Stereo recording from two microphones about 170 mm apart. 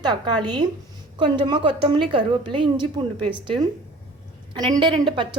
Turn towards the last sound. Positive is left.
turn(degrees=-25)  # may be behind; listen again after turning